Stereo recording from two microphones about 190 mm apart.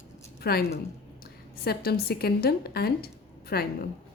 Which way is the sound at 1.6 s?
55° left (ahead or behind).